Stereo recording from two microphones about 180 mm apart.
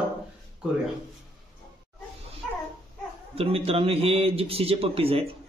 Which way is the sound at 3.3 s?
35° right (ahead or behind).